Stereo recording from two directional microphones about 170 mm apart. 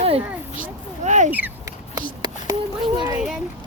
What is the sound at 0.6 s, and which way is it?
Speech, 45° right (ahead or behind).